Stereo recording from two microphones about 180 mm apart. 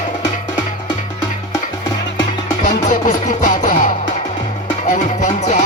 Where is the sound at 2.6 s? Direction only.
45° left (ahead or behind).